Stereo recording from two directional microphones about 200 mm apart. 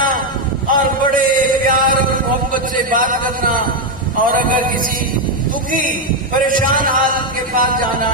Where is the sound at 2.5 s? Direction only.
45° right (ahead or behind).